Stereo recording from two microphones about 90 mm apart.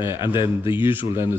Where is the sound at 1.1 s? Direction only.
30° right (ahead or behind).